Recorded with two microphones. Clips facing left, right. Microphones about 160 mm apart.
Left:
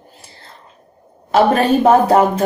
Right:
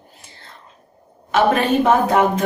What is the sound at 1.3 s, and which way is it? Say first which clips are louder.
Speech: left 3 dB; 35° left (ahead or behind).